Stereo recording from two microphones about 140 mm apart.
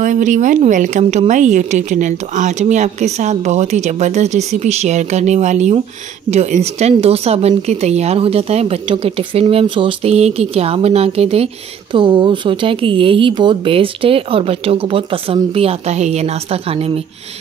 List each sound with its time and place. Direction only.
0.0 s speech: 65° right (ahead or behind); by 17.0 s 45° right (ahead or behind)